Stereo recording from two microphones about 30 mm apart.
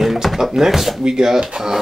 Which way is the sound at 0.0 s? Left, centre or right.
Centre.